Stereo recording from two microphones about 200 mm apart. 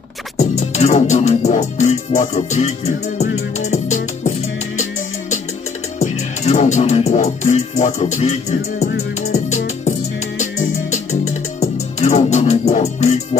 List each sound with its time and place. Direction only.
0.4 s music: 35° left (ahead or behind)
5.9 s music: 35° left (ahead or behind)